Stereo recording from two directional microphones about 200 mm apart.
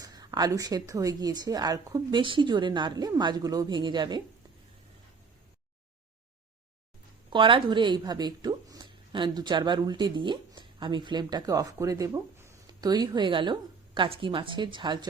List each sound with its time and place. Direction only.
0.0 s a woman's voice: 20° right (ahead or behind)
7.3 s speech: 25° right (ahead or behind)